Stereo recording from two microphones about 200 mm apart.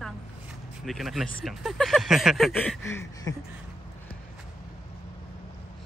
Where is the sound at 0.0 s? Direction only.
Centre (ahead or behind).